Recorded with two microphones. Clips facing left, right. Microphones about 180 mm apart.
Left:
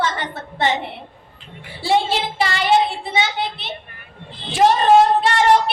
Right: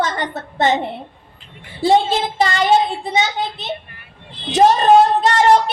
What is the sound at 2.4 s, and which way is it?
A woman's voice, 45° right (ahead or behind).